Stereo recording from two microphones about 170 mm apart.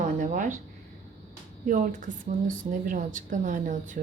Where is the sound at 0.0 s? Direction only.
50° right (ahead or behind).